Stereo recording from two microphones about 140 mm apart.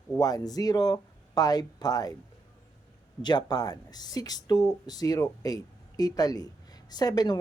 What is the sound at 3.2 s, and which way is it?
Speech, 30° left (ahead or behind).